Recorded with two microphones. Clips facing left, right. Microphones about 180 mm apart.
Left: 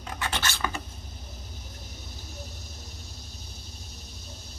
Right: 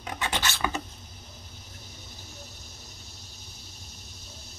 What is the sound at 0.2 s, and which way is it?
Filing, 15° right (ahead or behind).